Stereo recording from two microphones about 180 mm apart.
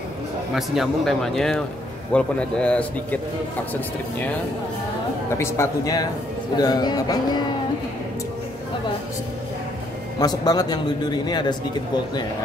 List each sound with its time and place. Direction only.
0.6 s a man's voice: centre (ahead or behind)
5.4 s a man's voice: 15° left (ahead or behind)
10.1 s a man's voice: 20° left (ahead or behind)